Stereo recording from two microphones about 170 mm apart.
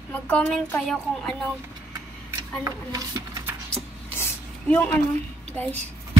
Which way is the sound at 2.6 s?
20° right (ahead or behind).